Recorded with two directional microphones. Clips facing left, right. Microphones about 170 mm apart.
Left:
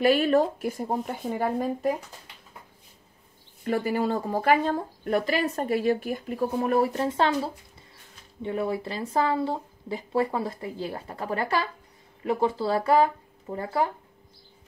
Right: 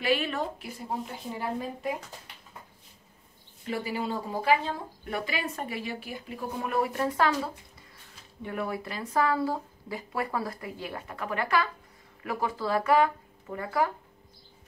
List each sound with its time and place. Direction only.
0.0 s speech: 45° left (ahead or behind)
3.6 s speech: 50° left (ahead or behind); by 13.9 s 30° left (ahead or behind)